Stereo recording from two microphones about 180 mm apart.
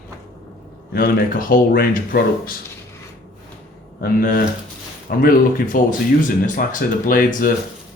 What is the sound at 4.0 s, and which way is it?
Speech, 55° left (ahead or behind).